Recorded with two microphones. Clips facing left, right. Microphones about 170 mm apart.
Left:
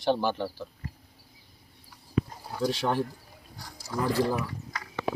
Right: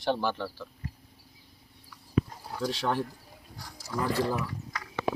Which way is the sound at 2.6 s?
5° left (ahead or behind).